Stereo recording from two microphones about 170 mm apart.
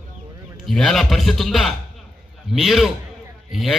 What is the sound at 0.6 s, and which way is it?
A man's voice, centre (ahead or behind).